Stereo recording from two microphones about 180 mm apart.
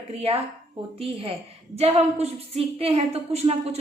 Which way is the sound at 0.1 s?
35° right (ahead or behind).